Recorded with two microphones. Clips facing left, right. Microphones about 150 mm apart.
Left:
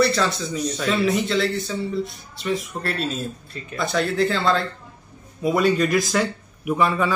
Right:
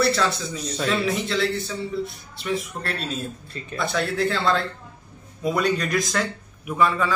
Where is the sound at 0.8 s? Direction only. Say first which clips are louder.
Left 2 dB; centre (ahead or behind).